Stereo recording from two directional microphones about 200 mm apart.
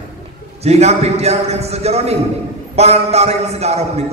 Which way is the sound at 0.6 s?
35° right (ahead or behind).